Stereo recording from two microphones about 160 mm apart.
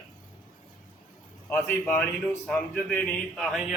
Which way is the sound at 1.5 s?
10° left (ahead or behind).